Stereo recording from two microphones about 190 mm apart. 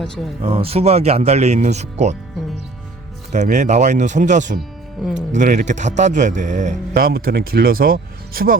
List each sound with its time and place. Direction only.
0.4 s speech: 30° right (ahead or behind)
3.3 s speech: 40° right (ahead or behind)